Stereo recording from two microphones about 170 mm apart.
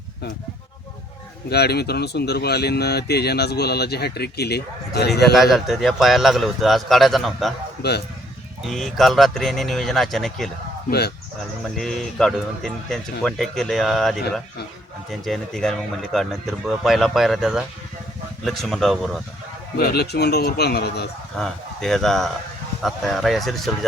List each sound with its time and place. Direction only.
1.5 s speech: 70° left (ahead or behind)
5.2 s a man's voice: centre (ahead or behind)
7.8 s speech: 70° left (ahead or behind)
8.6 s a man's voice: centre (ahead or behind)
10.8 s speech: 70° left (ahead or behind)
11.8 s a man's voice: centre (ahead or behind)
19.7 s speech: 70° left (ahead or behind)
21.3 s a man's voice: 5° left (ahead or behind)